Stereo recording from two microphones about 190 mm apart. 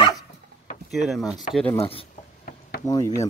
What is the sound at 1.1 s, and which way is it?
Speech, centre (ahead or behind).